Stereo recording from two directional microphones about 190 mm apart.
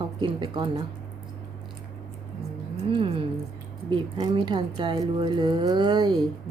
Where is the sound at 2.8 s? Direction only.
30° right (ahead or behind).